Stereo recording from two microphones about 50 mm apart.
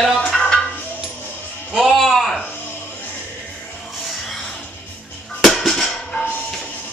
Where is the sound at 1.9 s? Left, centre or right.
Centre.